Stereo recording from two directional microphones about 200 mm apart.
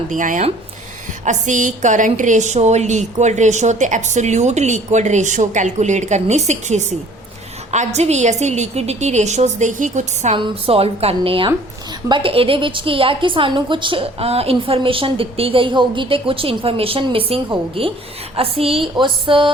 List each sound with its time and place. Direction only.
0.1 s a woman's voice: 40° right (ahead or behind); by 19.5 s 25° right (ahead or behind)